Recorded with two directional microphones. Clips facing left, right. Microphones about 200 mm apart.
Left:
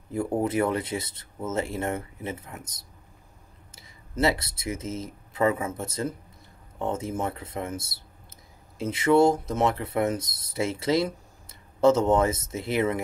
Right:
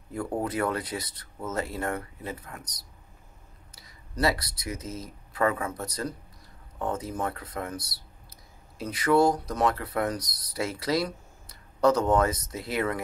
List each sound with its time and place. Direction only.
0.1 s speech: 25° left (ahead or behind)